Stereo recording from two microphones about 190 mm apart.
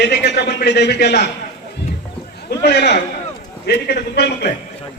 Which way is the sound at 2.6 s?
60° left (ahead or behind).